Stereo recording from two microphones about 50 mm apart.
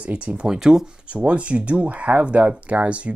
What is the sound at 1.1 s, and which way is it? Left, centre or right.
Speech, right.